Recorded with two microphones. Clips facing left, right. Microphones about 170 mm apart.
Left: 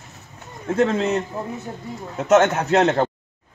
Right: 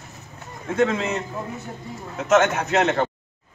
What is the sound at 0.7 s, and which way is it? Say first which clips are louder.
Speech: left 2 dB; 35° left (ahead or behind).